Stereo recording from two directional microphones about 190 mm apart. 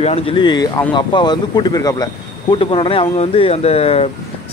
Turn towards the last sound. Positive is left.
turn(degrees=30)  # may be behind; listen again after turning